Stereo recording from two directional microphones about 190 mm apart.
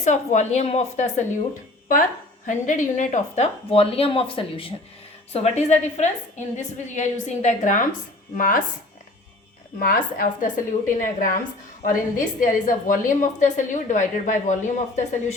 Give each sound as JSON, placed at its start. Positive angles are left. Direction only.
{"t": 0.0, "sound": "a woman's voice", "side_deg": 35}
{"t": 2.5, "sound": "a woman's voice", "side_deg": 40}
{"t": 9.7, "sound": "a woman's voice", "side_deg": 50}